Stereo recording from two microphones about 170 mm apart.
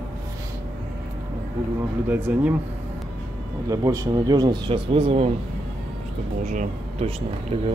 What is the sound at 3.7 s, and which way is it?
Speech, 20° right (ahead or behind).